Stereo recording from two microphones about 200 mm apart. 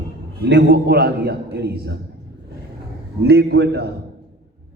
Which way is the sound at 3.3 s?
55° right (ahead or behind).